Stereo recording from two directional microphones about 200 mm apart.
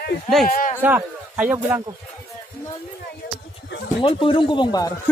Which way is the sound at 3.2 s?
45° left (ahead or behind).